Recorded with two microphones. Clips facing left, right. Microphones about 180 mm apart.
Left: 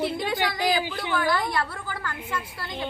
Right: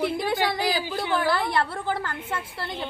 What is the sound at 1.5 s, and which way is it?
Speech, 30° right (ahead or behind).